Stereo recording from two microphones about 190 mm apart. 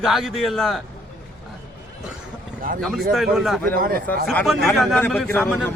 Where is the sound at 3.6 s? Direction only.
50° right (ahead or behind).